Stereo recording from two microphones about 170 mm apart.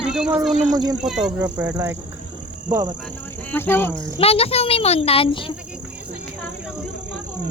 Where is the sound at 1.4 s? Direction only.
20° right (ahead or behind).